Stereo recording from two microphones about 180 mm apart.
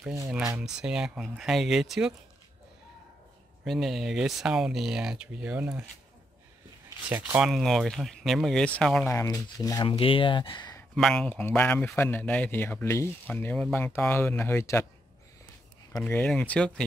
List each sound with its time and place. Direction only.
0.6 s speech: 5° right (ahead or behind)
3.6 s speech: centre (ahead or behind)
7.1 s speech: 5° right (ahead or behind)
9.1 s speech: 15° left (ahead or behind)
9.8 s speech: 30° left (ahead or behind)
11.0 s speech: 5° left (ahead or behind)
16.0 s speech: 10° left (ahead or behind)